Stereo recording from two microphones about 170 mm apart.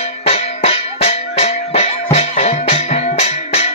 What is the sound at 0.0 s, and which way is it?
Music, 40° left (ahead or behind).